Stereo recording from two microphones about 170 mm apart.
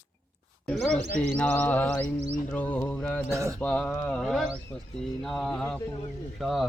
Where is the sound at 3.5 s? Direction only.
5° left (ahead or behind).